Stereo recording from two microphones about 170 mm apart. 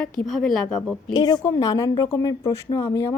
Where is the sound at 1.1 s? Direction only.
20° left (ahead or behind).